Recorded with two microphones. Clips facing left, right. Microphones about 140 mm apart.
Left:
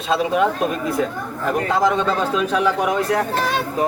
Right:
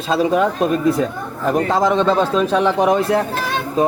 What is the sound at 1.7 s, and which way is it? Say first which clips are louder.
A man's voice: right 2 dB; 30° right (ahead or behind).